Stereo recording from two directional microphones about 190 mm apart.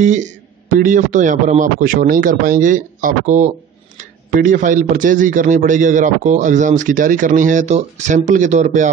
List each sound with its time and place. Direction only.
0.0 s a man's voice: 40° right (ahead or behind)